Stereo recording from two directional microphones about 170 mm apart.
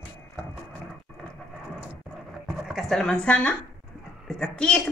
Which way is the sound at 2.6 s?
Centre (ahead or behind).